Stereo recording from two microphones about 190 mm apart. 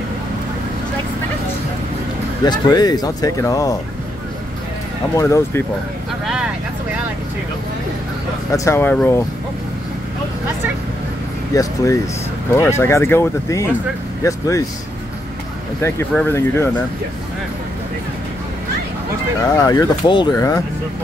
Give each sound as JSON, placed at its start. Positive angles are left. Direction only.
{"t": 2.4, "sound": "speech", "side_deg": 20}
{"t": 5.1, "sound": "speech", "side_deg": 15}
{"t": 8.5, "sound": "speech", "side_deg": 15}
{"t": 11.5, "sound": "speech", "side_deg": 15}
{"t": 15.8, "sound": "speech", "side_deg": 10}
{"t": 19.4, "sound": "speech", "side_deg": 20}